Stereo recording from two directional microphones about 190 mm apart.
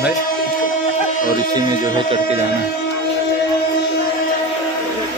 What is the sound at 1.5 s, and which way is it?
Speech, 20° right (ahead or behind).